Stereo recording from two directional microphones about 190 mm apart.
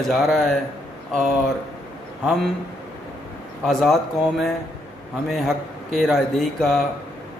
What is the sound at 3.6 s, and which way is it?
Speech, centre (ahead or behind).